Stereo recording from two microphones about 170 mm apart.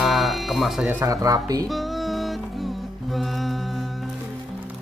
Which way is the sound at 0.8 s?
15° right (ahead or behind).